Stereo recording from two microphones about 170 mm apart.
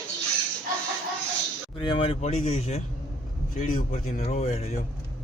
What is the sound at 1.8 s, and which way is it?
Speech, 35° left (ahead or behind).